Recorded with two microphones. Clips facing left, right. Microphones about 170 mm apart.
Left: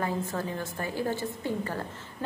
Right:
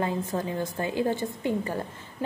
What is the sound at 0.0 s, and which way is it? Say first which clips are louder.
A woman's voice: right 2 dB; 20° right (ahead or behind).